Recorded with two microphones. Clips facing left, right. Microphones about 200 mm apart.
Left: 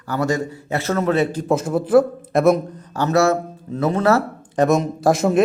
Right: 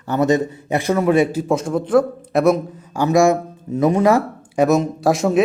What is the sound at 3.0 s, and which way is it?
Speech, 15° right (ahead or behind).